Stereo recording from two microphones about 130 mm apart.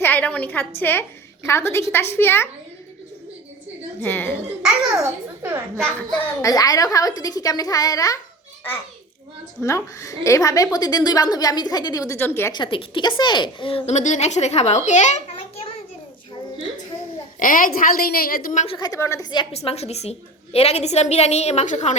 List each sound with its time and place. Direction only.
0.0 s a sound: 15° left (ahead or behind)
0.8 s a woman's voice: 15° left (ahead or behind)
4.0 s speech: 15° left (ahead or behind)
4.6 s a child's voice: 10° right (ahead or behind)
6.4 s a woman's voice: 30° left (ahead or behind)
9.6 s a woman's voice: 20° left (ahead or behind)
12.5 s a woman's voice: 40° left (ahead or behind); by 15.6 s 65° left (ahead or behind)
17.4 s a woman's voice: 90° left
18.8 s a woman's voice: 25° left (ahead or behind)
19.5 s a woman's voice: 55° left (ahead or behind)